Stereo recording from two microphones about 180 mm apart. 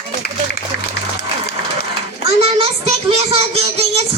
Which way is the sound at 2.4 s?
35° right (ahead or behind).